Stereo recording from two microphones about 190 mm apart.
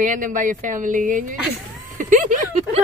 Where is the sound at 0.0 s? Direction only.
45° right (ahead or behind).